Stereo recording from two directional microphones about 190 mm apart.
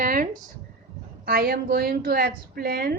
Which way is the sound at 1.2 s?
55° right (ahead or behind).